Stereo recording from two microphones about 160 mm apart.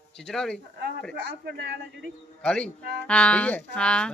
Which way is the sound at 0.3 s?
5° left (ahead or behind).